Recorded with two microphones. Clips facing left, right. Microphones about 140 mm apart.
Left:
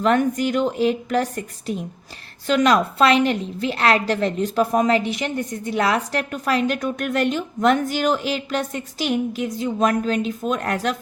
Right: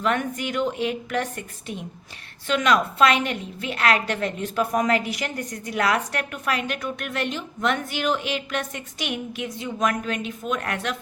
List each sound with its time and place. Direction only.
0.0 s a woman's voice: 35° left (ahead or behind)